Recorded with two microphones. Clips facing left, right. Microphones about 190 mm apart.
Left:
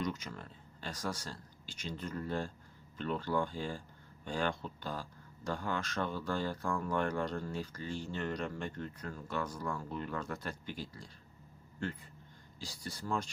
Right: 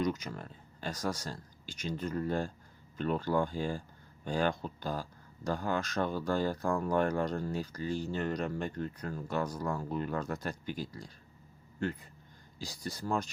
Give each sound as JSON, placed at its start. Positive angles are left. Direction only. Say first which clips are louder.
{"t": 0.0, "sound": "speech", "louder": "right 5 dB", "side_deg": -45}
{"t": 12.5, "sound": "speech", "louder": "right 5 dB", "side_deg": -40}